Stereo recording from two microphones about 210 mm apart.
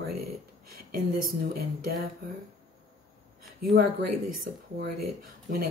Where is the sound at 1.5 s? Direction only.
45° right (ahead or behind).